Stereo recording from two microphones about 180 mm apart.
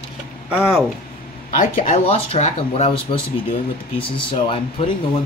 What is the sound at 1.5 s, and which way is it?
Speech, 50° left (ahead or behind).